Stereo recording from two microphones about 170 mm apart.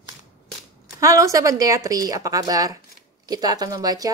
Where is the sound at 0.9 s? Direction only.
20° right (ahead or behind).